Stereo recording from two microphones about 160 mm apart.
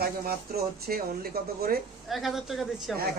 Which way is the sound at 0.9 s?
70° right (ahead or behind).